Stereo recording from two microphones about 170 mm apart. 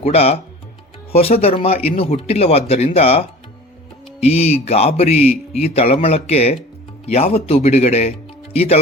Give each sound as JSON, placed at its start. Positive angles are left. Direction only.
{"t": 0.0, "sound": "speech", "side_deg": 35}